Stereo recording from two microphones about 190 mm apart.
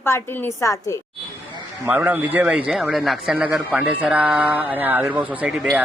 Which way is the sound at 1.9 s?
10° right (ahead or behind).